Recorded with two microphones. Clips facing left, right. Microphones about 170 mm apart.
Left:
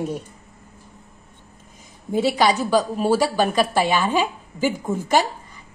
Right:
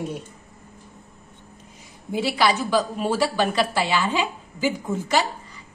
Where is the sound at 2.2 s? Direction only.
40° left (ahead or behind).